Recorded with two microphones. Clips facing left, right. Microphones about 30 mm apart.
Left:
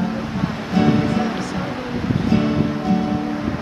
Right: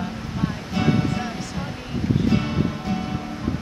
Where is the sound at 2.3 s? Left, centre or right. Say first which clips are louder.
Left 5 dB; centre.